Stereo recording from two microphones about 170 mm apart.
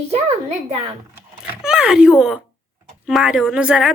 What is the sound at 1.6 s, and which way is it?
A woman's voice, 5° right (ahead or behind).